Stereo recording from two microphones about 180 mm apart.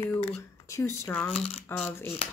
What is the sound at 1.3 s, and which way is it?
Speech, 35° left (ahead or behind).